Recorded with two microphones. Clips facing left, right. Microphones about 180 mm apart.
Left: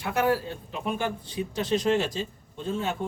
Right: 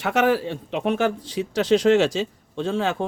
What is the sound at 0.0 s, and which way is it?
A man's voice, 85° right.